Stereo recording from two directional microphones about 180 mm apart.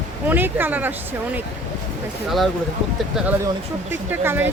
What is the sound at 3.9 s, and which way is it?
Speech, 10° right (ahead or behind).